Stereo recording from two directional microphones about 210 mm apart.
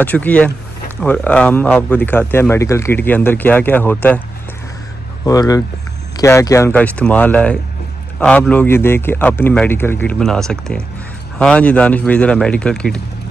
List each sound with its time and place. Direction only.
0.0 s speech: 5° left (ahead or behind)
5.2 s speech: 15° left (ahead or behind)